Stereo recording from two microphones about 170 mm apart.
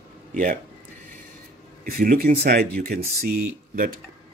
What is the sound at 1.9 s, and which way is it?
Speech, 55° right (ahead or behind).